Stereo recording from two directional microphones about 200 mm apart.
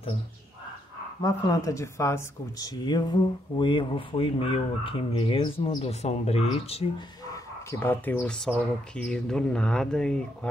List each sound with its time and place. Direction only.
1.2 s speech: 15° left (ahead or behind)
7.8 s speech: 10° left (ahead or behind)